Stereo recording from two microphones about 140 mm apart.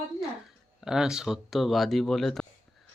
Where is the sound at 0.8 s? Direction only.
5° right (ahead or behind).